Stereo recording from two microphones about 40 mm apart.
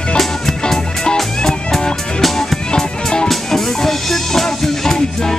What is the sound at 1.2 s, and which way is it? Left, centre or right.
Music, centre.